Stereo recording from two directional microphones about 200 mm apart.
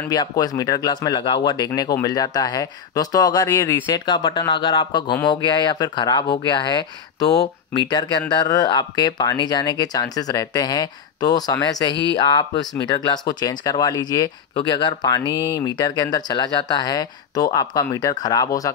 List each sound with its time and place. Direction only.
0.1 s speech: 20° left (ahead or behind)